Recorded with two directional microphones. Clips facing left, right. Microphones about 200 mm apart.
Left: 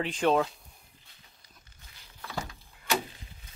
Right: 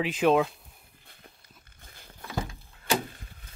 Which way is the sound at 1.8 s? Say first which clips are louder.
Right 7 dB; 50° right (ahead or behind).